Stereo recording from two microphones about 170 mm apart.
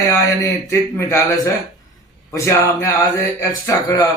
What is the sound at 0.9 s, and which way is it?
A man's voice, 20° left (ahead or behind).